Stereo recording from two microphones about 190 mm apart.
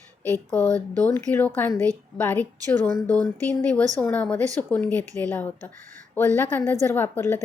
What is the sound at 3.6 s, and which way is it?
A woman's voice, 5° left (ahead or behind).